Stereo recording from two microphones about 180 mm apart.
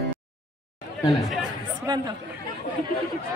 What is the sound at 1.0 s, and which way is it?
Speech, centre (ahead or behind).